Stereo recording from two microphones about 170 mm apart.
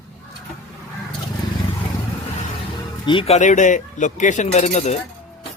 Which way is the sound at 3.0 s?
35° left (ahead or behind).